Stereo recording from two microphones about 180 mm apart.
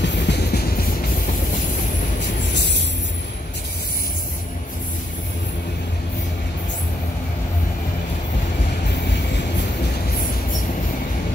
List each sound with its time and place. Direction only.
0.0 s train: 70° left (ahead or behind)